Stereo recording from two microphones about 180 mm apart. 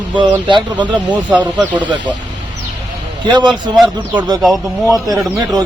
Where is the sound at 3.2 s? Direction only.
25° right (ahead or behind).